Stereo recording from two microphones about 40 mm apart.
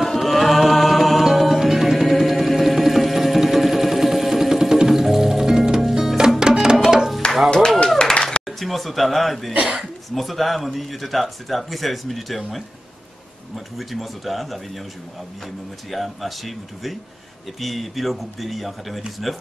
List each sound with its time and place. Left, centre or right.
0.0 s music: centre
6.4 s music: centre
8.0 s clapping: left
8.5 s a sound: centre
9.5 s speech: right
10.1 s speech: centre
13.7 s speech: centre
15.9 s speech: centre